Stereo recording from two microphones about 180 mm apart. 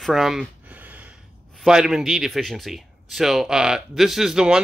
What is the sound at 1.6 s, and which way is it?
A man's voice, 5° right (ahead or behind).